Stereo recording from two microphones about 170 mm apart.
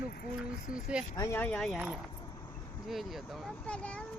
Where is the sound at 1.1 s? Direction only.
15° left (ahead or behind).